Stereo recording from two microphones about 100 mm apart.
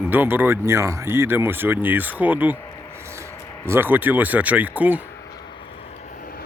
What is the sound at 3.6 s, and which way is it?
Speech, 25° right (ahead or behind).